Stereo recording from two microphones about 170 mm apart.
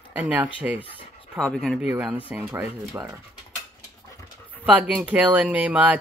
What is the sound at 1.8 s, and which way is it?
Speech, 5° right (ahead or behind).